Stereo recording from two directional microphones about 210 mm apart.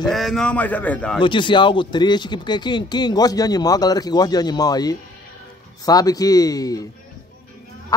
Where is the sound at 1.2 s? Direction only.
25° left (ahead or behind).